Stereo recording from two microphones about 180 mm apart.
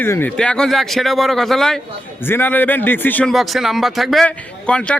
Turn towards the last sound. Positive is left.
turn(degrees=5)  # may be behind; listen again after turning